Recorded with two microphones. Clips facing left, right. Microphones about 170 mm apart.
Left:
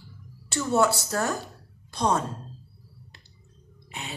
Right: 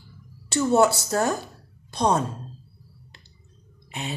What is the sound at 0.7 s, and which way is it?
Speech, 20° right (ahead or behind).